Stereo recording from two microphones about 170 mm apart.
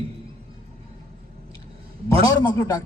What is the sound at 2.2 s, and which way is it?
Speech, 20° left (ahead or behind).